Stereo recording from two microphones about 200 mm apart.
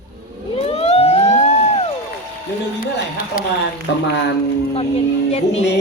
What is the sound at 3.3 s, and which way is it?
Speech, 45° left (ahead or behind).